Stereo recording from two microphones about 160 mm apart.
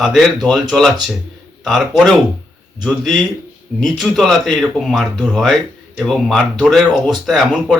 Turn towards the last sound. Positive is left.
turn(degrees=0)  # may be behind; listen again after turning